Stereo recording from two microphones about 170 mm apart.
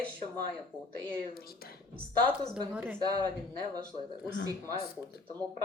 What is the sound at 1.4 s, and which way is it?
Speech, 65° left (ahead or behind).